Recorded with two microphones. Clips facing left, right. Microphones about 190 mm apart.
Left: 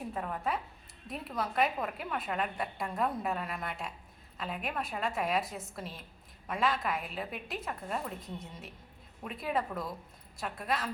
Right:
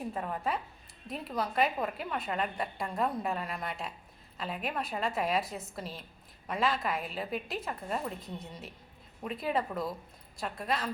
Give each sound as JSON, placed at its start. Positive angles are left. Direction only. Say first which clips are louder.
{"t": 0.1, "sound": "a woman's voice", "louder": "left 1 dB", "side_deg": 0}